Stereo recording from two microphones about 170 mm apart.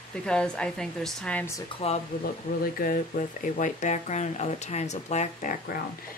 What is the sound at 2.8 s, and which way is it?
Speech, 55° left (ahead or behind).